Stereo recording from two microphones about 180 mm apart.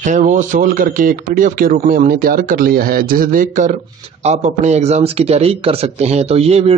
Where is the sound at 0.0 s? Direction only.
45° right (ahead or behind).